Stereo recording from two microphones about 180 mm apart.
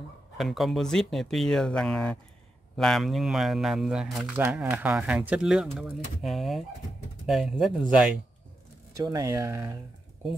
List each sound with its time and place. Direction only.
0.4 s speech: centre (ahead or behind)
8.9 s speech: 20° right (ahead or behind)